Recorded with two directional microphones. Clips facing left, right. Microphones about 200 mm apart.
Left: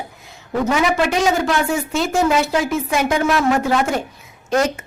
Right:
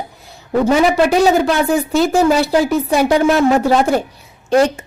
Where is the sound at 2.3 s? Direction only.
35° right (ahead or behind).